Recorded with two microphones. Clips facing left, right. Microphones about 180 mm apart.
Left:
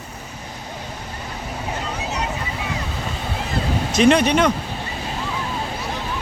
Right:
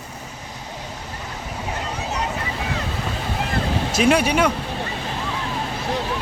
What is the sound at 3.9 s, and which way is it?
Speech, 5° right (ahead or behind).